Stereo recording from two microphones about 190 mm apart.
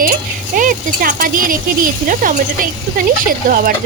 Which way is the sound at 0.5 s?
45° right (ahead or behind).